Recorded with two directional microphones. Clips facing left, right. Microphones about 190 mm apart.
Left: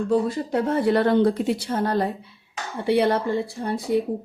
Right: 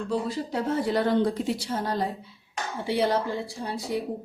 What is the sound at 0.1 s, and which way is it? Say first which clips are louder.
A woman's voice: left 6 dB; 55° left (ahead or behind).